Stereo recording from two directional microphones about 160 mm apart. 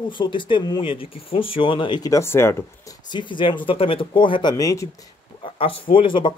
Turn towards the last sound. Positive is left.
turn(degrees=30)  # may be behind; listen again after turning